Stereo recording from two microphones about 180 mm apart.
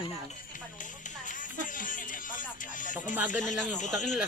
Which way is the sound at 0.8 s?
45° left (ahead or behind).